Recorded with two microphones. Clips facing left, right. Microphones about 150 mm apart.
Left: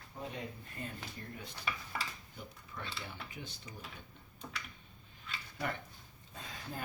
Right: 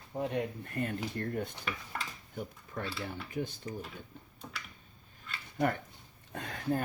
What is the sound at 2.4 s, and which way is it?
Speech, 50° right (ahead or behind).